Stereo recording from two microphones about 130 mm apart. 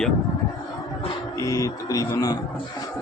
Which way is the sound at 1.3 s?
25° left (ahead or behind).